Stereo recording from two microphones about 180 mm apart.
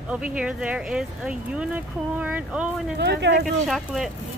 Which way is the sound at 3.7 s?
Centre (ahead or behind).